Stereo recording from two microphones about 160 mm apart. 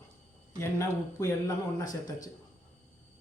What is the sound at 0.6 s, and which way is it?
Speech, 20° left (ahead or behind).